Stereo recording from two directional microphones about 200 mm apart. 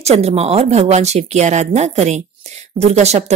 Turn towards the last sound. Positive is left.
turn(degrees=-35)  # may be behind; listen again after turning